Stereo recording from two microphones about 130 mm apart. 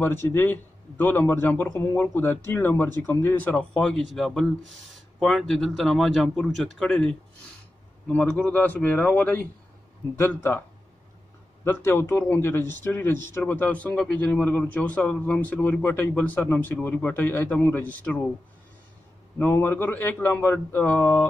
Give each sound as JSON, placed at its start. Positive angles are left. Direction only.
{"t": 0.0, "sound": "a man's voice", "side_deg": 15}
{"t": 11.6, "sound": "a man's voice", "side_deg": 15}
{"t": 19.3, "sound": "a man's voice", "side_deg": 15}